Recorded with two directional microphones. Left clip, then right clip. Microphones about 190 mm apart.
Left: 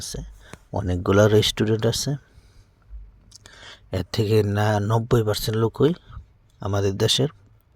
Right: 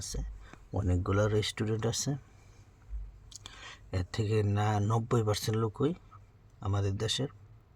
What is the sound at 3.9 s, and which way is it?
Speech, 40° left (ahead or behind).